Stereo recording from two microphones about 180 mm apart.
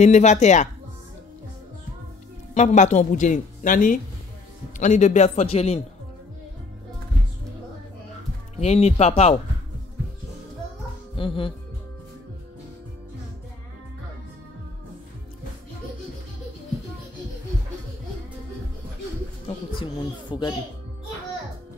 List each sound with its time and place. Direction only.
0.0 s a man's voice: 40° left (ahead or behind)
2.5 s a man's voice: 40° left (ahead or behind)
8.5 s a man's voice: 35° left (ahead or behind)
11.1 s speech: 30° left (ahead or behind)
19.4 s a sound: 30° left (ahead or behind)